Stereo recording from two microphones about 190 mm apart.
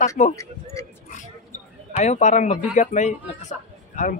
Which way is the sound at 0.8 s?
15° left (ahead or behind).